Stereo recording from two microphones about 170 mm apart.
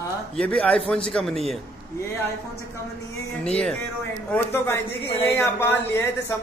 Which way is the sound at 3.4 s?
5° left (ahead or behind).